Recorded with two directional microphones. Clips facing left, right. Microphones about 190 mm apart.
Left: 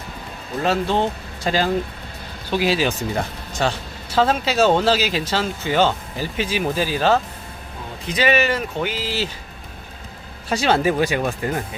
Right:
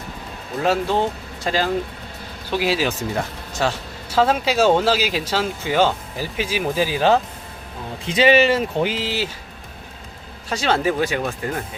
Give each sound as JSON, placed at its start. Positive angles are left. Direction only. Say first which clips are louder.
{"t": 0.6, "sound": "speech", "louder": "even", "side_deg": -10}
{"t": 8.0, "sound": "speech", "louder": "right 4 dB", "side_deg": -25}
{"t": 10.5, "sound": "speech", "louder": "left 2 dB", "side_deg": 10}